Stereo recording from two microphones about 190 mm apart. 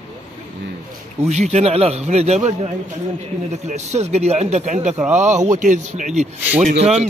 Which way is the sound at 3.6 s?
35° right (ahead or behind).